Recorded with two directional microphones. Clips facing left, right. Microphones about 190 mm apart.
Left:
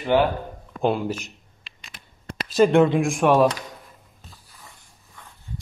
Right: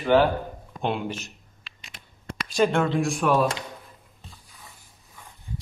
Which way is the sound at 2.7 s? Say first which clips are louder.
Left 6 dB; 15° left (ahead or behind).